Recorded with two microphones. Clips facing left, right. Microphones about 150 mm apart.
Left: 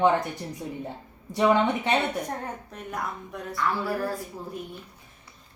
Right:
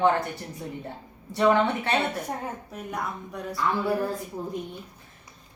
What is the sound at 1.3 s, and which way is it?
Speech, 15° left (ahead or behind).